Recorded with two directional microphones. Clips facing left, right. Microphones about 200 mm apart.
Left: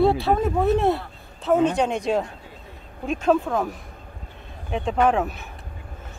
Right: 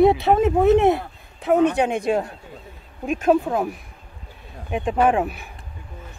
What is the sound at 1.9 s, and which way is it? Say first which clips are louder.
Speech: right 2 dB; 55° right (ahead or behind).